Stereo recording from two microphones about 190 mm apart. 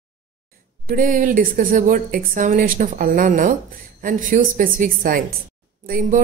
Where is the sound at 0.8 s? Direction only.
50° right (ahead or behind).